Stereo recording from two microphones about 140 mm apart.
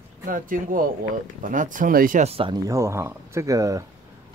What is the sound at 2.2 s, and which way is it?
Speech, 40° right (ahead or behind).